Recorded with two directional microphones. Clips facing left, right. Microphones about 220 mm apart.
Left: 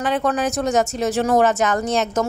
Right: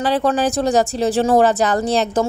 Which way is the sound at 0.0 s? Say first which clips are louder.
Right 3 dB; 35° right (ahead or behind).